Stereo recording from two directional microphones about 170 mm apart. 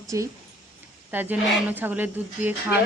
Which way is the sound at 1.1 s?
10° right (ahead or behind).